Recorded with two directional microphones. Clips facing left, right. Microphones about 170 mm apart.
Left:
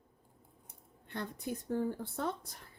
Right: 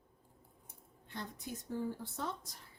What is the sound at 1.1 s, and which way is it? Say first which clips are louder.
Speech: left 5 dB; 60° left (ahead or behind).